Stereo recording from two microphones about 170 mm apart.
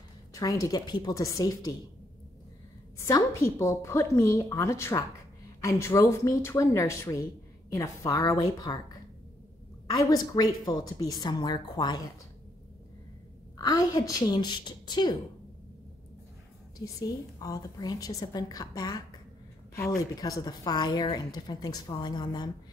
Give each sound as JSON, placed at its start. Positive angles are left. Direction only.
{"t": 0.3, "sound": "speech", "side_deg": 20}
{"t": 3.0, "sound": "a woman's voice", "side_deg": 15}
{"t": 13.6, "sound": "speech", "side_deg": 20}
{"t": 16.7, "sound": "speech", "side_deg": 20}